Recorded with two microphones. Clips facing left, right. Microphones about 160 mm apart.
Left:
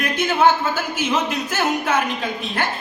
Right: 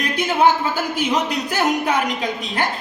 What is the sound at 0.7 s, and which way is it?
A woman's voice, 15° right (ahead or behind).